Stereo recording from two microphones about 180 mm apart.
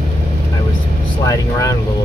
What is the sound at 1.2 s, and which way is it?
Vehicle, 20° left (ahead or behind).